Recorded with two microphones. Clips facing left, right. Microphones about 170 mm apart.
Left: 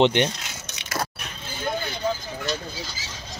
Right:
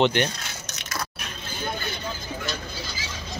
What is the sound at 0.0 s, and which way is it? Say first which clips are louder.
Speech: left 2 dB; 25° left (ahead or behind).